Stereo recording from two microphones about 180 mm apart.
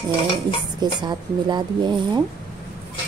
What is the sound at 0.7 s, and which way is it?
A woman's voice, 25° right (ahead or behind).